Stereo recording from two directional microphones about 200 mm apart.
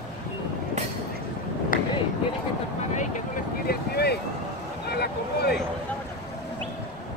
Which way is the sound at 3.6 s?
55° left (ahead or behind).